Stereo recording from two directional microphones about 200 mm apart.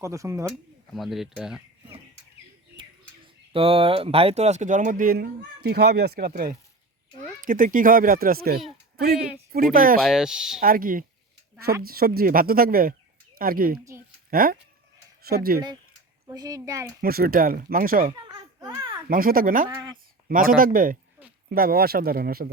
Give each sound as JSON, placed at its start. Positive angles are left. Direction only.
{"t": 0.0, "sound": "speech", "side_deg": -15}
{"t": 0.9, "sound": "speech", "side_deg": 0}
{"t": 3.5, "sound": "speech", "side_deg": -30}
{"t": 9.5, "sound": "speech", "side_deg": -45}
{"t": 10.0, "sound": "speech", "side_deg": 0}
{"t": 10.6, "sound": "speech", "side_deg": -45}
{"t": 16.2, "sound": "speech", "side_deg": -20}
{"t": 17.0, "sound": "speech", "side_deg": -50}
{"t": 18.6, "sound": "a sound", "side_deg": -20}
{"t": 19.0, "sound": "speech", "side_deg": -45}
{"t": 19.6, "sound": "speech", "side_deg": -20}
{"t": 20.2, "sound": "speech", "side_deg": -45}